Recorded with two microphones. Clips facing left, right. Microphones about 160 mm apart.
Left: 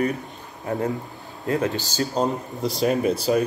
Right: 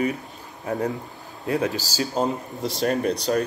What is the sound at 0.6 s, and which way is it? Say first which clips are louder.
Speech: even; 20° left (ahead or behind).